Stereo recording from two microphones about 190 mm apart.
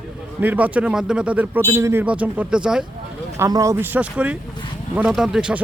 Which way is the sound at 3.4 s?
15° right (ahead or behind).